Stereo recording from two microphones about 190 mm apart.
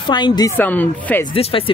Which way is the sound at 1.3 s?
30° left (ahead or behind).